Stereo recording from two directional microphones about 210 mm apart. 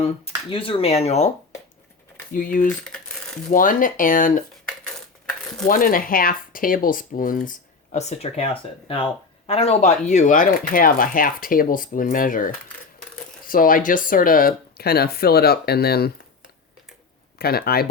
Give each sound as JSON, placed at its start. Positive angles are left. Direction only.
{"t": 0.0, "sound": "speech", "side_deg": 25}
{"t": 2.3, "sound": "speech", "side_deg": 40}
{"t": 2.6, "sound": "typing", "side_deg": 5}
{"t": 3.5, "sound": "speech", "side_deg": 40}
{"t": 5.6, "sound": "speech", "side_deg": 40}
{"t": 17.3, "sound": "speech", "side_deg": 45}